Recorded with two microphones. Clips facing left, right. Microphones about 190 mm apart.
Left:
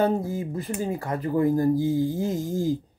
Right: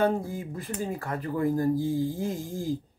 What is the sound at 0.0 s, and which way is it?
Speech, 25° left (ahead or behind).